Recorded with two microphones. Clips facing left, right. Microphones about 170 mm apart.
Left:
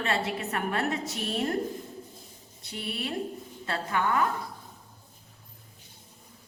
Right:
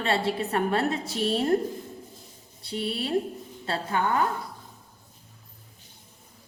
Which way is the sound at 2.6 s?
30° right (ahead or behind).